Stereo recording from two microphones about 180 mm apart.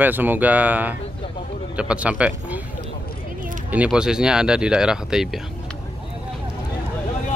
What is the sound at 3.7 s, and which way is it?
Speech, 5° right (ahead or behind).